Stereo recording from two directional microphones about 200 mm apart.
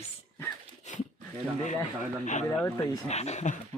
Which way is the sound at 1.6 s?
35° left (ahead or behind).